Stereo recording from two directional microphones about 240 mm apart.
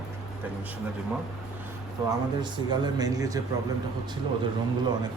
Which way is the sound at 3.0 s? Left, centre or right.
Centre.